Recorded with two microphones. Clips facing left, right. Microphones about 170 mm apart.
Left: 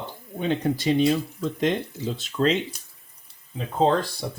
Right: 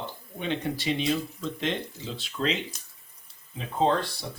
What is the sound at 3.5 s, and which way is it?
Speech, 40° left (ahead or behind).